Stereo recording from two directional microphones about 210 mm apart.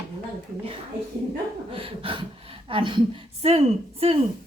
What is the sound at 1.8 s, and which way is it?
A woman's voice, 25° right (ahead or behind).